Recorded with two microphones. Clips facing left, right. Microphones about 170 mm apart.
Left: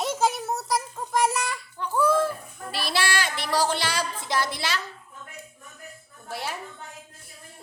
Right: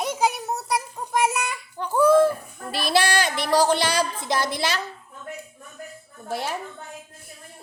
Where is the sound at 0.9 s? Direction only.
15° right (ahead or behind).